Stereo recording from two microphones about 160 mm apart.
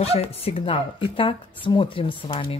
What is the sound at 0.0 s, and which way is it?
Speech, 40° left (ahead or behind).